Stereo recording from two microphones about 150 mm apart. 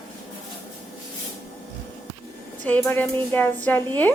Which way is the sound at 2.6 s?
15° left (ahead or behind).